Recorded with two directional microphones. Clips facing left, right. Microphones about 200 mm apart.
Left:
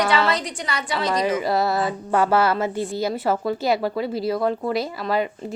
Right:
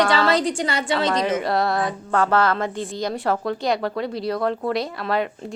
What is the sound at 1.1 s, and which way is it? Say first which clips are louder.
A woman's voice: even; centre (ahead or behind).